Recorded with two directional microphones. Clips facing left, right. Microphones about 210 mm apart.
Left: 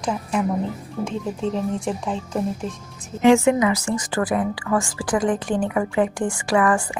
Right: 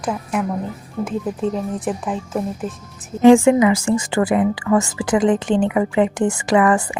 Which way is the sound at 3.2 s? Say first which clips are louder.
Right 5 dB; 30° right (ahead or behind).